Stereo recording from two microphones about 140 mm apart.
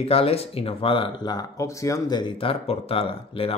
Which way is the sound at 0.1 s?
45° left (ahead or behind).